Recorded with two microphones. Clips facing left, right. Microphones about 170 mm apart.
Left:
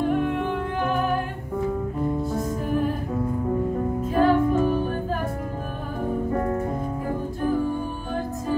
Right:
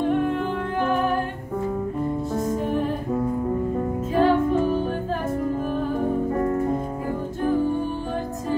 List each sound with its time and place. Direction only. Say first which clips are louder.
4.1 s music: even; 5° left (ahead or behind)